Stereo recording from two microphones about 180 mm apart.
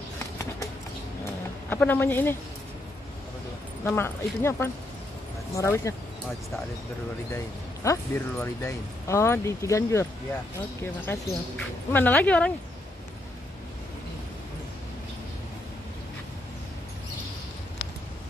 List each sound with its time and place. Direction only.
1.7 s speech: 10° left (ahead or behind)
3.8 s speech: 15° left (ahead or behind)
7.3 s speech: 15° left (ahead or behind)